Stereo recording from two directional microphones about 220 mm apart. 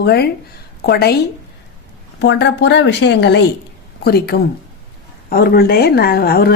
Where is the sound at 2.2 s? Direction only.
55° left (ahead or behind).